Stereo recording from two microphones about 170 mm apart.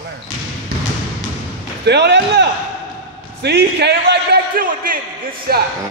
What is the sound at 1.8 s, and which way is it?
A man's voice, 80° right.